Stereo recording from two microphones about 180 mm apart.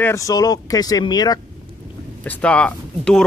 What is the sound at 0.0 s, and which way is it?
Speech, 15° left (ahead or behind).